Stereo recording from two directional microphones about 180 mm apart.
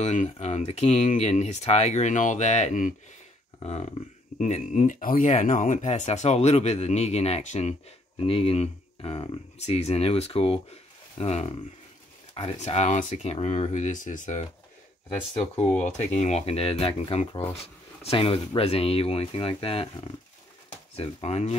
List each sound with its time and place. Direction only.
0.0 s speech: 40° left (ahead or behind)
3.5 s a sound: 35° left (ahead or behind)
4.4 s speech: 40° left (ahead or behind)